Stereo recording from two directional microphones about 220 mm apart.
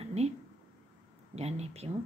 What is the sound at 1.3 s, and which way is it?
Speech, 30° right (ahead or behind).